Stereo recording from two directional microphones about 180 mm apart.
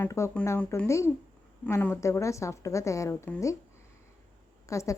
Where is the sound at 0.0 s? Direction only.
15° left (ahead or behind).